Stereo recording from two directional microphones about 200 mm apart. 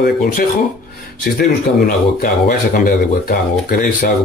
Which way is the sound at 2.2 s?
45° left (ahead or behind).